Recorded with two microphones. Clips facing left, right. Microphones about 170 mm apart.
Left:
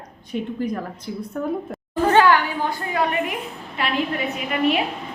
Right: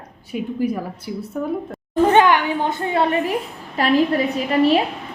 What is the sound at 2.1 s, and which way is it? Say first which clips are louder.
A woman's voice: left 2 dB; 20° right (ahead or behind).